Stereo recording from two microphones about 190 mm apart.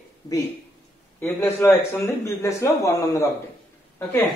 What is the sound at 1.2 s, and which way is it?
A man's voice, 10° left (ahead or behind).